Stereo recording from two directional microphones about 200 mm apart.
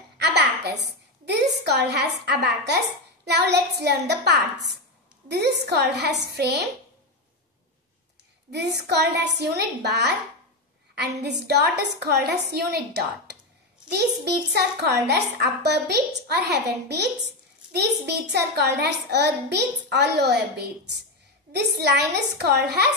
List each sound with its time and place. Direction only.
1.2 s a child's voice: 55° right (ahead or behind)
8.5 s a child's voice: 55° right (ahead or behind)